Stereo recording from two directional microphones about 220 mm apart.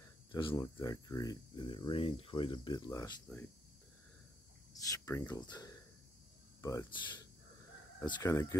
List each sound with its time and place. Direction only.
0.3 s speech: 20° left (ahead or behind)
4.8 s speech: 15° left (ahead or behind)